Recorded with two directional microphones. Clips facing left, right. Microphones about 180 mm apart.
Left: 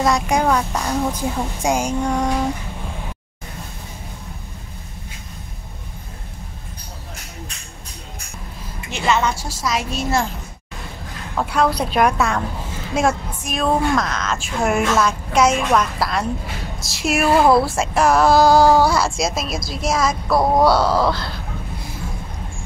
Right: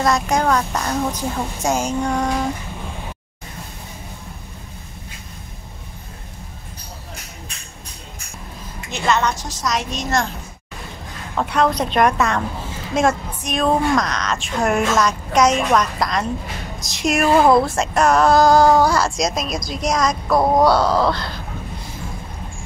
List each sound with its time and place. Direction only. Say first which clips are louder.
0.0 s a woman's voice: even; 10° left (ahead or behind)
8.9 s a woman's voice: even; 5° left (ahead or behind)
11.3 s speech: even; 5° left (ahead or behind)